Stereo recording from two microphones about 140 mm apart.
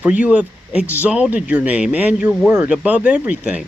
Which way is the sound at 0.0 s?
10° right (ahead or behind).